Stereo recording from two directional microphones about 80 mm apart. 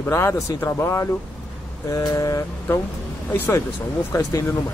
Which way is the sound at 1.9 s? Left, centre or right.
Left.